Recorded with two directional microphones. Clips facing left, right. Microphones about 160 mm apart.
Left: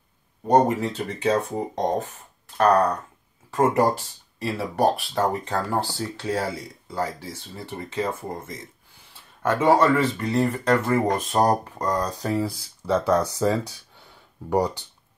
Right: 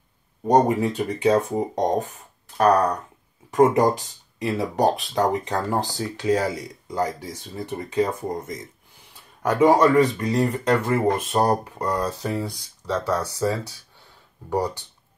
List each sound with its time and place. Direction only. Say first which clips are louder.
0.5 s speech: right 1 dB; 15° right (ahead or behind)
12.8 s speech: left 4 dB; 10° left (ahead or behind)